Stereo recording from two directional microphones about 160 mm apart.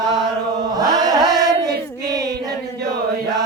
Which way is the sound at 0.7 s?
25° right (ahead or behind).